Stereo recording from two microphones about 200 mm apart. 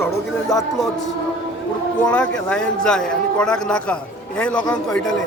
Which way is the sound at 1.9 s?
5° left (ahead or behind).